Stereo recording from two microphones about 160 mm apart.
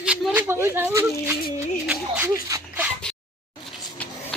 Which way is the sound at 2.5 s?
20° right (ahead or behind).